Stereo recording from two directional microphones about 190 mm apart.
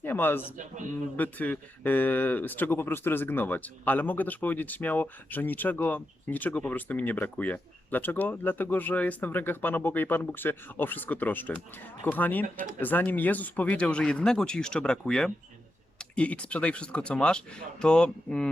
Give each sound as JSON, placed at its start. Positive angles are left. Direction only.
{"t": 0.0, "sound": "a sound", "side_deg": 10}
{"t": 0.5, "sound": "a man's voice", "side_deg": -40}
{"t": 1.1, "sound": "speech", "side_deg": 10}